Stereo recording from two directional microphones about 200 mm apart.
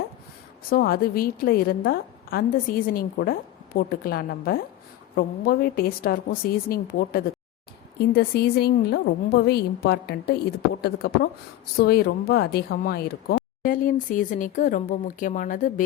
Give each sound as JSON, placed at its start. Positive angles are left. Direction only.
{"t": 0.7, "sound": "a woman's voice", "side_deg": 50}